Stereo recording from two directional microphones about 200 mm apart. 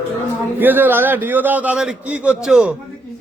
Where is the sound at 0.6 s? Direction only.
10° right (ahead or behind).